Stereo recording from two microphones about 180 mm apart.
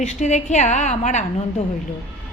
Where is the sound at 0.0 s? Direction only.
40° left (ahead or behind).